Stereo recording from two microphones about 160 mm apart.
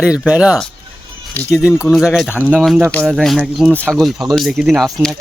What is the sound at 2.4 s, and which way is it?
Speech, 5° right (ahead or behind).